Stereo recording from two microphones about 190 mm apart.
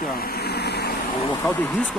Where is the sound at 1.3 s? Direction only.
10° left (ahead or behind).